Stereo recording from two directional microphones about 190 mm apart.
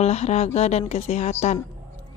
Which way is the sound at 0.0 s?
35° left (ahead or behind).